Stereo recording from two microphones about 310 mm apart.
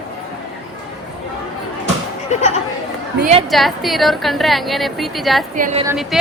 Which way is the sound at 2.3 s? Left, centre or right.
Left.